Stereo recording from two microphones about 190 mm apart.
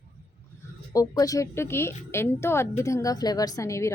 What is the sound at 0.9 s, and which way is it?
Speech, 20° left (ahead or behind).